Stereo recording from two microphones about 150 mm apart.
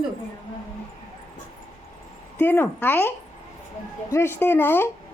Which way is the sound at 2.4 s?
15° left (ahead or behind).